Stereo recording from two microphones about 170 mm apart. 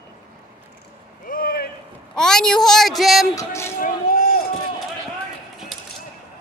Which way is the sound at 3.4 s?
15° left (ahead or behind).